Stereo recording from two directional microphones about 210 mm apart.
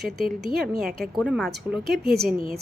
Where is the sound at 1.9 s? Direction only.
50° right (ahead or behind).